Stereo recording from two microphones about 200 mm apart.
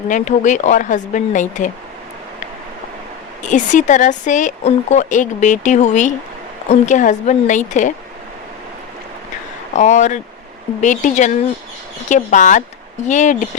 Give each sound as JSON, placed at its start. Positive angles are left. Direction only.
{"t": 0.1, "sound": "speech", "side_deg": 40}
{"t": 3.4, "sound": "speech", "side_deg": 40}
{"t": 9.7, "sound": "speech", "side_deg": 35}